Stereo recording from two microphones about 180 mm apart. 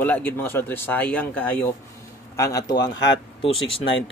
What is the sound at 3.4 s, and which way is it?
Speech, 30° left (ahead or behind).